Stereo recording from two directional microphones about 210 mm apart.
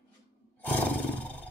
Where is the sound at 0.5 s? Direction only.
5° left (ahead or behind).